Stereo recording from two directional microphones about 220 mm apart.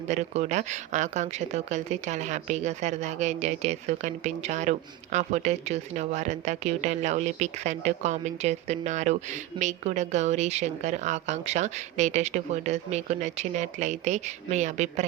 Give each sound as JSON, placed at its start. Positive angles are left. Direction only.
{"t": 0.1, "sound": "speech", "side_deg": -30}